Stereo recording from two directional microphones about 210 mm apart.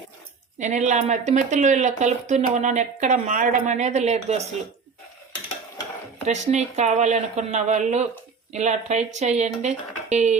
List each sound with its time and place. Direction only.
0.6 s speech: 35° right (ahead or behind)
6.2 s speech: 35° right (ahead or behind)